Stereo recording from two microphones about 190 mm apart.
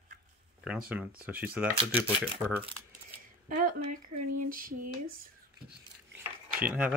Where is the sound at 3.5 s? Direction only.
45° right (ahead or behind).